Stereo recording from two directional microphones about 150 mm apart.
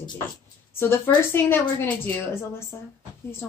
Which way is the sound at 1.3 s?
15° left (ahead or behind).